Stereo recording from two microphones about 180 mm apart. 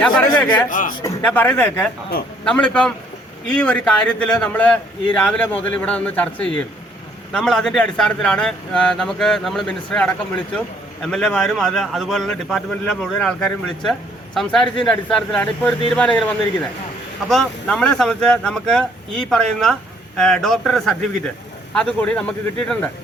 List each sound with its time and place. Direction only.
0.0 s a man's voice: 5° left (ahead or behind)
0.7 s a man's voice: 45° left (ahead or behind)
1.2 s a man's voice: 10° left (ahead or behind)